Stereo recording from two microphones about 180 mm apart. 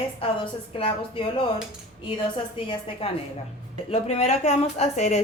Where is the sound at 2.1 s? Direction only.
25° left (ahead or behind).